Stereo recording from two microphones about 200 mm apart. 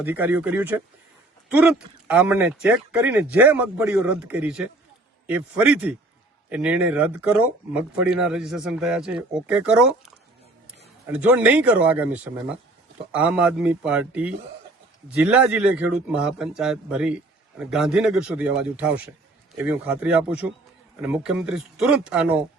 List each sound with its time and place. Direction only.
0.0 s a man's voice: 10° right (ahead or behind)